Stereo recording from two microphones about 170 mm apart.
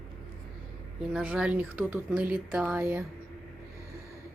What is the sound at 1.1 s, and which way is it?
Speech, 5° right (ahead or behind).